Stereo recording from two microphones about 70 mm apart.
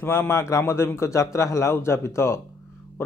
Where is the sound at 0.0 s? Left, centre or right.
Left.